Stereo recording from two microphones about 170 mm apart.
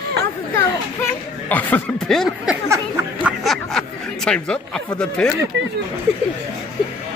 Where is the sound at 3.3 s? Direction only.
Centre (ahead or behind).